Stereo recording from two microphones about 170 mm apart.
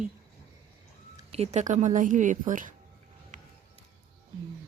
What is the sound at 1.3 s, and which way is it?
A woman's voice, 40° right (ahead or behind).